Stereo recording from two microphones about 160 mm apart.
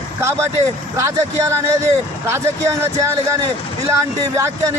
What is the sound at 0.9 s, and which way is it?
Speech, 20° right (ahead or behind).